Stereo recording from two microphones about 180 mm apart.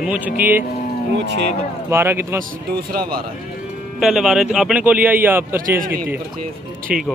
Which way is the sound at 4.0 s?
Centre (ahead or behind).